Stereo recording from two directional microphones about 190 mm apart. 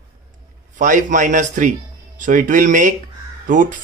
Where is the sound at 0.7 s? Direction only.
40° right (ahead or behind).